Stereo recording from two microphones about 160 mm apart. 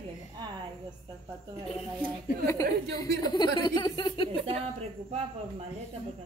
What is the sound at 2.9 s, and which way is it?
Speech, 25° left (ahead or behind).